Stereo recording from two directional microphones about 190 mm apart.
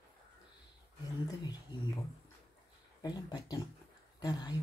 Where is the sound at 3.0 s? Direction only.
20° left (ahead or behind).